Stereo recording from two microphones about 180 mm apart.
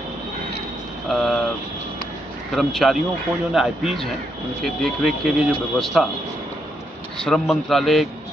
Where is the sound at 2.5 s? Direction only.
Centre (ahead or behind).